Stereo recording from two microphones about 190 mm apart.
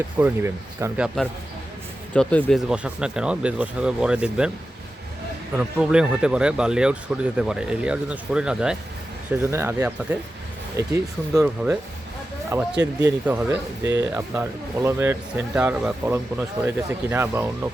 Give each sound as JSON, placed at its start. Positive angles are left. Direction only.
{"t": 0.2, "sound": "speech", "side_deg": -15}
{"t": 1.0, "sound": "speech", "side_deg": 0}
{"t": 5.5, "sound": "speech", "side_deg": -5}
{"t": 12.8, "sound": "speech", "side_deg": -20}
{"t": 13.2, "sound": "speech", "side_deg": -10}